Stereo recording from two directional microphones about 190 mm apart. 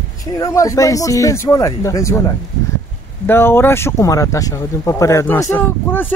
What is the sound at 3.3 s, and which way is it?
Speech, 10° left (ahead or behind).